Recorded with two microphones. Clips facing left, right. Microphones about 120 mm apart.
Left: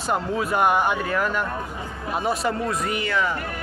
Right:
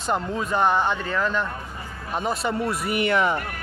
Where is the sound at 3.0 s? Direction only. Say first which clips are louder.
Right 5 dB; 20° right (ahead or behind).